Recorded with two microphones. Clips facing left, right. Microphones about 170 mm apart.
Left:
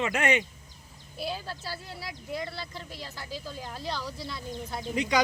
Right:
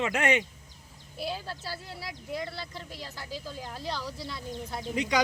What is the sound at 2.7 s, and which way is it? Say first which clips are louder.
Speech: even; 15° right (ahead or behind).